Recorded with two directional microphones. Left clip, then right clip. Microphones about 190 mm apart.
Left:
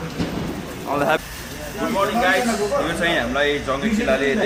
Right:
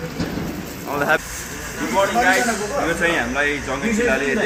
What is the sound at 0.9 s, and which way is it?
Speech, 15° left (ahead or behind).